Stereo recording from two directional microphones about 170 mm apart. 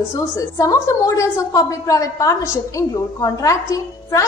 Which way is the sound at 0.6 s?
20° left (ahead or behind).